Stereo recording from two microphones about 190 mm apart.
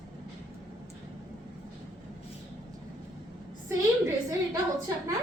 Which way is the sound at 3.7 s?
15° right (ahead or behind).